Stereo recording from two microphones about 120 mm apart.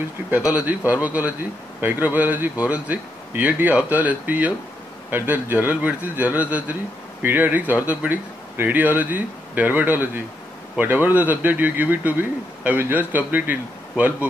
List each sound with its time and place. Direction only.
0.5 s a man's voice: 10° right (ahead or behind)